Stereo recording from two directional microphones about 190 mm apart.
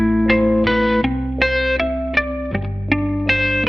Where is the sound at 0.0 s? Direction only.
Centre (ahead or behind).